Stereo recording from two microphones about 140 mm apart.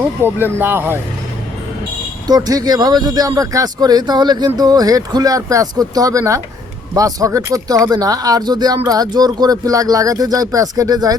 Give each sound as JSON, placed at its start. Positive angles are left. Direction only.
{"t": 0.2, "sound": "speech", "side_deg": -15}
{"t": 2.2, "sound": "speech", "side_deg": -25}